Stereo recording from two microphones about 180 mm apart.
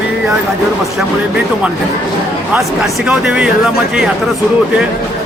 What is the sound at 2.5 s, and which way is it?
Speech, 5° right (ahead or behind).